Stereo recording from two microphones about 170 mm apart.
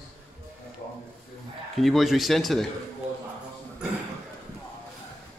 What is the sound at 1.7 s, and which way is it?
Speech, centre (ahead or behind).